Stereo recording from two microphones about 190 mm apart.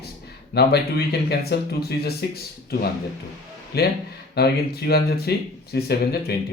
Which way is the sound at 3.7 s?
55° left (ahead or behind).